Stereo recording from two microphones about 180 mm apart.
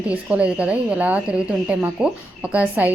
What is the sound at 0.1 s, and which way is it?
A woman's voice, 5° right (ahead or behind).